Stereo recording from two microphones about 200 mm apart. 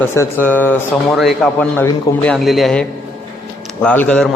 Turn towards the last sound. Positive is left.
turn(degrees=5)  # may be behind; listen again after turning